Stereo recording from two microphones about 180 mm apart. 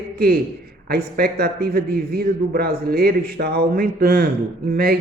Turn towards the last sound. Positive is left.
turn(degrees=-55)  # may be behind; listen again after turning